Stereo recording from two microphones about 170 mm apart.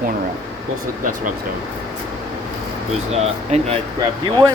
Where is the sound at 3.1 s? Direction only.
40° right (ahead or behind).